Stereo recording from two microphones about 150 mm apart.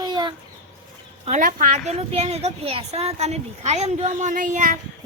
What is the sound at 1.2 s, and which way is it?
A woman's voice, 60° right (ahead or behind).